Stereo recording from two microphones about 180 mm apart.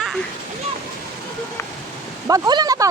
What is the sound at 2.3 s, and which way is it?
Speech, 20° right (ahead or behind).